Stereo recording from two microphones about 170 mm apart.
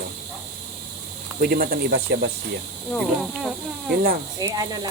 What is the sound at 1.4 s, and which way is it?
Speech, 60° right (ahead or behind).